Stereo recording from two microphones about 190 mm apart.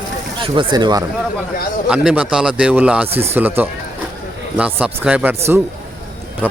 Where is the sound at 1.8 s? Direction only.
5° right (ahead or behind).